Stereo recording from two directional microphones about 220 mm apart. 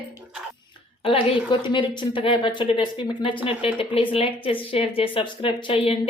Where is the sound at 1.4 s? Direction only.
20° left (ahead or behind).